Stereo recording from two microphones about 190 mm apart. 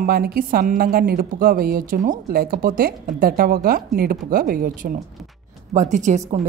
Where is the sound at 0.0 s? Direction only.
50° right (ahead or behind).